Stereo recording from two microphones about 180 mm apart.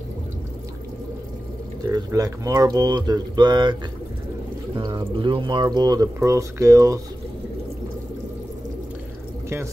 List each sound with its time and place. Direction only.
1.9 s speech: 20° right (ahead or behind)
4.7 s speech: 25° right (ahead or behind)